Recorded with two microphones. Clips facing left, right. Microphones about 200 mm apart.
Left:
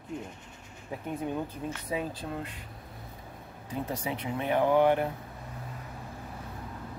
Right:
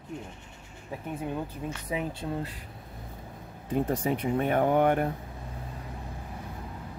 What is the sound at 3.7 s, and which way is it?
Speech, 50° right (ahead or behind).